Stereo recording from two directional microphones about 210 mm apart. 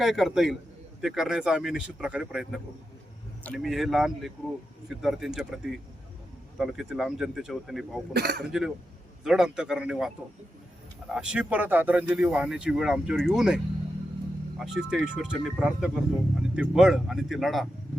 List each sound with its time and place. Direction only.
0.0 s speech: centre (ahead or behind)
6.6 s speech: centre (ahead or behind)
8.1 s speech: 50° right (ahead or behind)
8.4 s speech: centre (ahead or behind)
11.1 s speech: 5° right (ahead or behind)
14.6 s speech: centre (ahead or behind)